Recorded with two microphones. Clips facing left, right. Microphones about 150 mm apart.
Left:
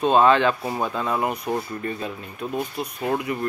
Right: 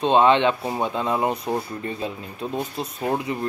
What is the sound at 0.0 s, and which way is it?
Speech, 20° right (ahead or behind).